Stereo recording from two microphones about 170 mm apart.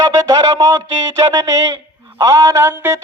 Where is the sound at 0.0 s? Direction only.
20° right (ahead or behind).